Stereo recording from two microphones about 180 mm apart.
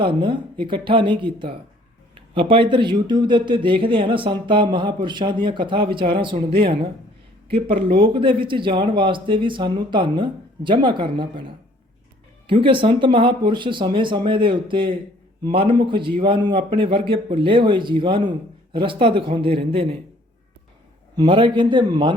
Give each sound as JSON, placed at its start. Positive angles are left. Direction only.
{"t": 0.2, "sound": "speech", "side_deg": -25}
{"t": 21.2, "sound": "speech", "side_deg": -30}